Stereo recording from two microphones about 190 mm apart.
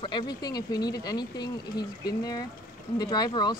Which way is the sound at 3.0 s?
20° left (ahead or behind).